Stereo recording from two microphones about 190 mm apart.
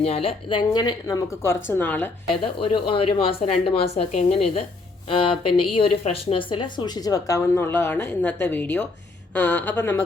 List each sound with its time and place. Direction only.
0.0 s speech: 30° left (ahead or behind); by 2.0 s 10° left (ahead or behind)
2.3 s speech: 30° left (ahead or behind); by 10.0 s 10° left (ahead or behind)